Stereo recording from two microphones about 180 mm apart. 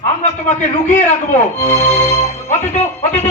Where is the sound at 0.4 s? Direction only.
40° left (ahead or behind).